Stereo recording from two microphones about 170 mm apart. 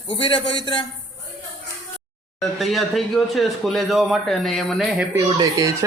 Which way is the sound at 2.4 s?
Centre (ahead or behind).